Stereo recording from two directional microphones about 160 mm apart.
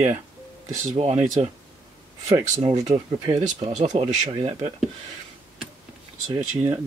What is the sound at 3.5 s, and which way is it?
Speech, 45° right (ahead or behind).